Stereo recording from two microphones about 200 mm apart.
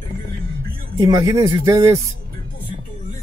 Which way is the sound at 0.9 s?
20° right (ahead or behind).